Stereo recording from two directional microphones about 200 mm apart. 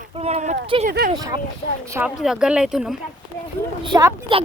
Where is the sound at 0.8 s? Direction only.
50° right (ahead or behind).